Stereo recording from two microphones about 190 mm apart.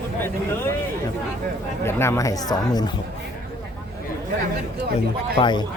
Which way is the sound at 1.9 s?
15° left (ahead or behind).